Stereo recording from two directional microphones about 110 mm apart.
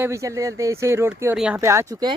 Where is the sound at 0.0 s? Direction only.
25° right (ahead or behind).